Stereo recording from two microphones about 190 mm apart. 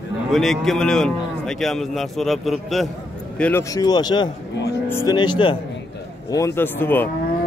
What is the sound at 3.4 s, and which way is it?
Speech, 15° left (ahead or behind).